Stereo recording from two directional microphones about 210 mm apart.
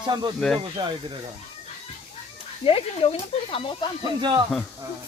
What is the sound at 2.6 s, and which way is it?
Speech, 25° left (ahead or behind).